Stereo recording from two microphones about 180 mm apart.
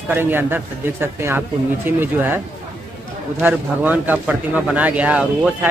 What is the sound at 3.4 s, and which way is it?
A man's voice, 10° right (ahead or behind).